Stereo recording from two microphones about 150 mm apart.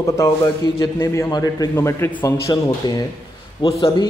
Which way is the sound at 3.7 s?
35° left (ahead or behind).